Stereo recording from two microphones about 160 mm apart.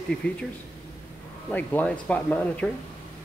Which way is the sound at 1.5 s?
10° left (ahead or behind).